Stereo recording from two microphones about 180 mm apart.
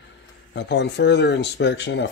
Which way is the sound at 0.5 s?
75° left (ahead or behind).